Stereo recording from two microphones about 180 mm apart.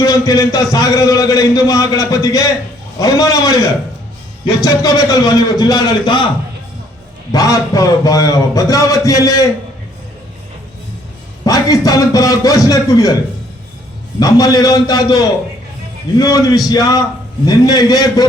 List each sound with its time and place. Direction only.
0.0 s a man's voice: 20° left (ahead or behind)
7.3 s a man's voice: 20° left (ahead or behind)
11.4 s a man's voice: 20° left (ahead or behind)
14.2 s a man's voice: 20° left (ahead or behind)